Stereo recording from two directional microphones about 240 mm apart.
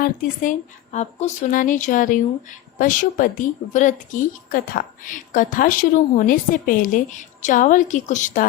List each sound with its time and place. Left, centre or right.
0.0 s speech: left